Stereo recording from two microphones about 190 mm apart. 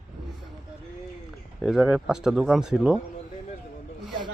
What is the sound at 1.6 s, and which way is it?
Speech, 5° right (ahead or behind).